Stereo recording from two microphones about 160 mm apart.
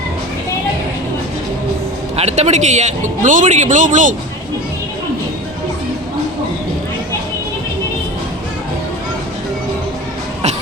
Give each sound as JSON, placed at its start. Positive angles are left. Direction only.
{"t": 2.1, "sound": "a man's voice", "side_deg": -45}